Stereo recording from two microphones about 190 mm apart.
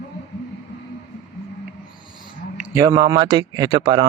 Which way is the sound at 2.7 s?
20° right (ahead or behind).